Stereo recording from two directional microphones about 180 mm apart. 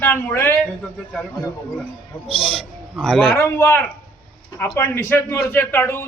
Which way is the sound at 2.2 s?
30° left (ahead or behind).